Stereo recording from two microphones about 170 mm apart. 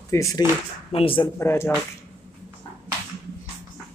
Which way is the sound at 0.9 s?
30° left (ahead or behind).